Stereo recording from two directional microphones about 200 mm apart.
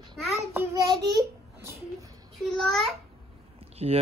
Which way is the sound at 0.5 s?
20° right (ahead or behind).